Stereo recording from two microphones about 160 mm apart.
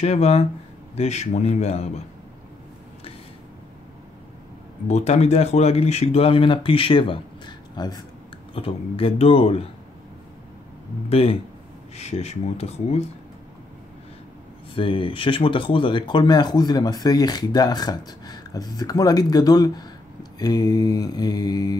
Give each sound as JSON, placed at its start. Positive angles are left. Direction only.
{"t": 0.0, "sound": "speech", "side_deg": 40}
{"t": 4.8, "sound": "speech", "side_deg": 45}
{"t": 11.1, "sound": "speech", "side_deg": 35}
{"t": 14.8, "sound": "speech", "side_deg": 30}